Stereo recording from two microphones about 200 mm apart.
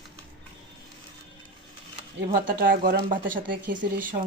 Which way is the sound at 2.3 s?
45° right (ahead or behind).